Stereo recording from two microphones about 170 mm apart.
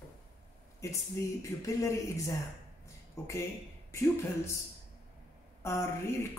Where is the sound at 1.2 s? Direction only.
15° left (ahead or behind).